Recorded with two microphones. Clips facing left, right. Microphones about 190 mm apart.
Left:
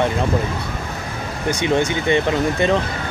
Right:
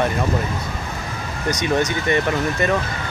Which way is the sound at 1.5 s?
25° left (ahead or behind).